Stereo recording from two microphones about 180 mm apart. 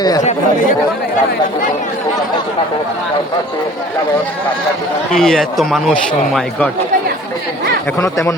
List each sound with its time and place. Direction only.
5.1 s a man's voice: centre (ahead or behind)
7.9 s speech: 15° left (ahead or behind)